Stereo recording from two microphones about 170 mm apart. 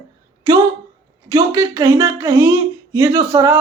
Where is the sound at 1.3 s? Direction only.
20° right (ahead or behind).